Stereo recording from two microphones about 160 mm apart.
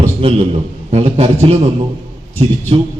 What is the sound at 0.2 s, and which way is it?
A man's voice, 35° right (ahead or behind).